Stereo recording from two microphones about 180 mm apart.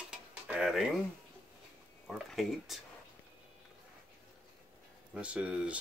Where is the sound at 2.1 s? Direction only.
Centre (ahead or behind).